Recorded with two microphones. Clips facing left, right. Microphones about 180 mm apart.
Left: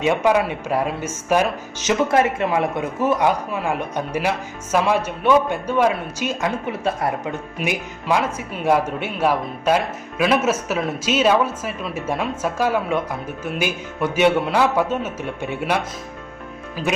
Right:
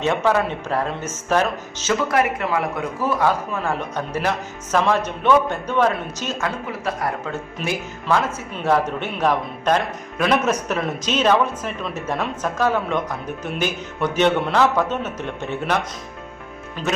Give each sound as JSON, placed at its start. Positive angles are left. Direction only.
{"t": 0.0, "sound": "a man's voice", "side_deg": 10}
{"t": 6.7, "sound": "a man's voice", "side_deg": 25}